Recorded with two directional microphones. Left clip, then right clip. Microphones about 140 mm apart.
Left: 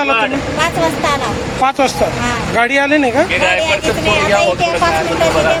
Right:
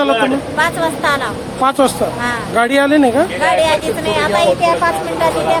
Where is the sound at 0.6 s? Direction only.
15° right (ahead or behind).